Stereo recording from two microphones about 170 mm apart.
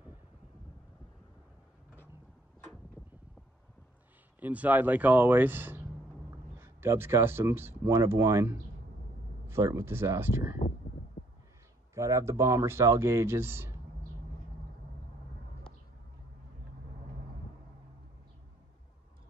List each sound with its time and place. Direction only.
4.4 s speech: 10° right (ahead or behind)
11.9 s speech: 15° right (ahead or behind)